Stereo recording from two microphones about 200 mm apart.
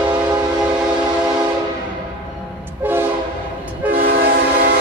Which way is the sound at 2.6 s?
10° right (ahead or behind).